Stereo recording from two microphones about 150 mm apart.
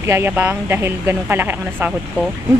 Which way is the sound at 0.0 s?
15° right (ahead or behind).